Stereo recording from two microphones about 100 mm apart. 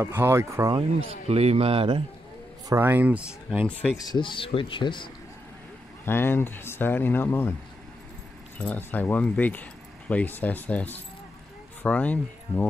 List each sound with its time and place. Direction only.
0.0 s speech: 25° right (ahead or behind)
0.7 s speech: 75° right (ahead or behind)
2.7 s speech: 20° right (ahead or behind)
4.0 s speech: 50° left (ahead or behind)
6.0 s speech: 25° left (ahead or behind)
8.5 s speech: 15° left (ahead or behind)